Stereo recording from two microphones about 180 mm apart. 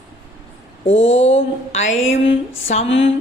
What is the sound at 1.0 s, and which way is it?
Speech, 35° left (ahead or behind).